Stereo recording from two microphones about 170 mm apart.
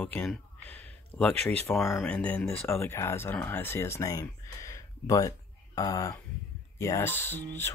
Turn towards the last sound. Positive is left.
turn(degrees=15)  # may be behind; listen again after turning